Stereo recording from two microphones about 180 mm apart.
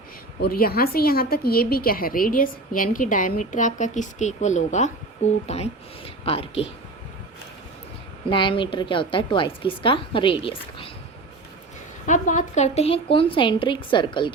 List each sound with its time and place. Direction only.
0.4 s a woman's voice: 60° left (ahead or behind); by 6.7 s 30° left (ahead or behind)
8.3 s a woman's voice: 25° left (ahead or behind)
12.0 s a woman's voice: 45° left (ahead or behind); by 14.3 s 25° left (ahead or behind)